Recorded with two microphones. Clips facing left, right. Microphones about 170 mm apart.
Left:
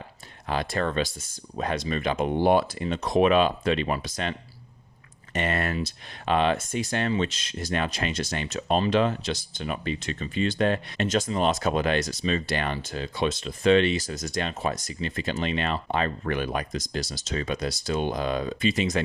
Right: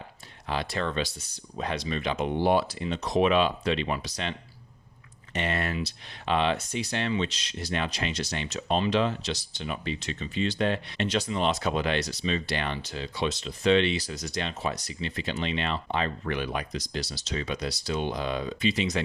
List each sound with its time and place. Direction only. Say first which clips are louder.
0.4 s speech: left 3 dB; 50° left (ahead or behind)